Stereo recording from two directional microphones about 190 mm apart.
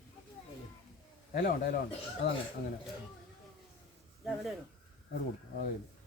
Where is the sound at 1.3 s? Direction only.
50° left (ahead or behind).